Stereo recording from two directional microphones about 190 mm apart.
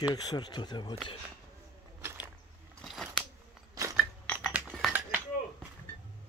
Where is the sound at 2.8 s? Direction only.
Centre (ahead or behind).